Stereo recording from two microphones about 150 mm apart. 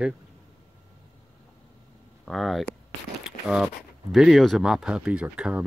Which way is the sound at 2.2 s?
Centre (ahead or behind).